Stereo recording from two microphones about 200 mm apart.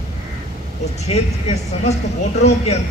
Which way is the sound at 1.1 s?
35° left (ahead or behind).